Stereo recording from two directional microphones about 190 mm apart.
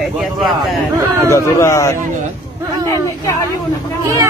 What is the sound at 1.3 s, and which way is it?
Speech, 15° left (ahead or behind).